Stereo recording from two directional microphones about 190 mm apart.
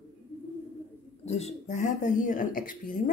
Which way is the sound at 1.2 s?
35° left (ahead or behind).